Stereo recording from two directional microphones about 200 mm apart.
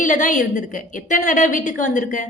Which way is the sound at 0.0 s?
40° left (ahead or behind).